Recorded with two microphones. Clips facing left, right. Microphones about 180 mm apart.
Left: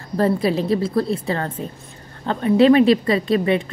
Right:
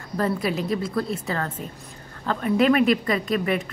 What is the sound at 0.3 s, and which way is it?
A woman's voice, 30° left (ahead or behind).